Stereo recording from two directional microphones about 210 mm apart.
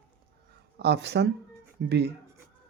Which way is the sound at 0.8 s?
55° right (ahead or behind).